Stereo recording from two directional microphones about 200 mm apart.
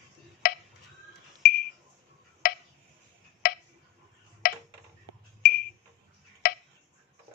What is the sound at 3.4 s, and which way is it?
Tick-tock, 50° left (ahead or behind).